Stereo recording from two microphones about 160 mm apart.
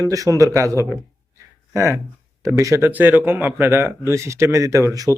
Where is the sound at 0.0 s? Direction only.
20° right (ahead or behind).